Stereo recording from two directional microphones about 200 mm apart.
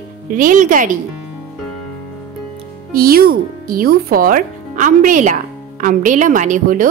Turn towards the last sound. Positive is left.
turn(degrees=-40)  # may be behind; listen again after turning